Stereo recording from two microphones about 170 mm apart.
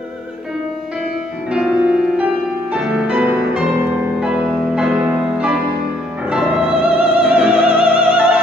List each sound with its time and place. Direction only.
1.5 s music: 5° right (ahead or behind)